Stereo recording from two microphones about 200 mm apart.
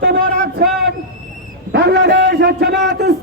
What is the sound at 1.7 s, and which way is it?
A man's voice, 55° right (ahead or behind).